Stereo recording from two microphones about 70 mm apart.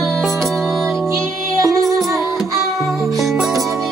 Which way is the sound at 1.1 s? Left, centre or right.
Right.